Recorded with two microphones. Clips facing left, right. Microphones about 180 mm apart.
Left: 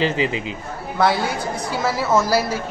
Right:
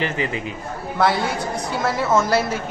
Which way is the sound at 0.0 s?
20° left (ahead or behind).